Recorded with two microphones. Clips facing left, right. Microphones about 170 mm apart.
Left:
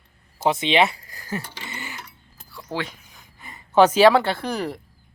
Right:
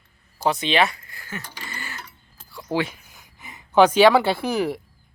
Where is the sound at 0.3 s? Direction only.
25° left (ahead or behind).